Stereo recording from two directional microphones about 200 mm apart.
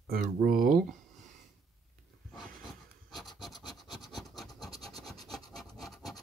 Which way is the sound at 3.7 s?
Centre (ahead or behind).